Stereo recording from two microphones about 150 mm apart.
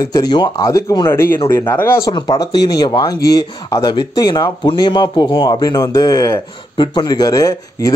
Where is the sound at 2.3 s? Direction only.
25° left (ahead or behind).